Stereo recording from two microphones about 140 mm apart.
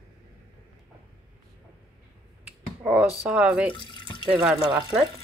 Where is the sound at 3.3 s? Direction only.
10° right (ahead or behind).